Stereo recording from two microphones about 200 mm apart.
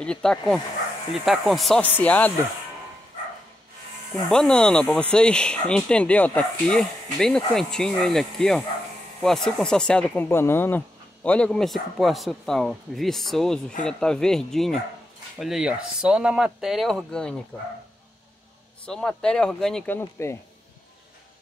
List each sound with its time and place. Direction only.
0.0 s speech: 5° left (ahead or behind)
4.3 s speech: 5° left (ahead or behind)
18.9 s speech: 5° left (ahead or behind)